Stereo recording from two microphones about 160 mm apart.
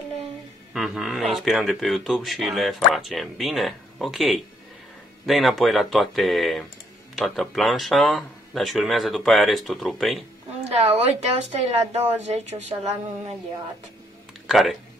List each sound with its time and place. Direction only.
0.7 s speech: centre (ahead or behind)
10.6 s speech: 40° right (ahead or behind)
14.5 s speech: centre (ahead or behind)